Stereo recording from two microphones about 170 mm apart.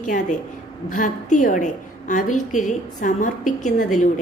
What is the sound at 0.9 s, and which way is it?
A woman's voice, 50° left (ahead or behind).